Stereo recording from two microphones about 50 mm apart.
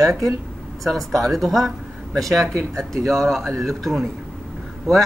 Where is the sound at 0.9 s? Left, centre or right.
Centre.